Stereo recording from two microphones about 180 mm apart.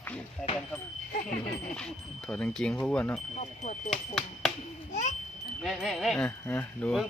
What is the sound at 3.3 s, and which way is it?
Speech, 40° left (ahead or behind).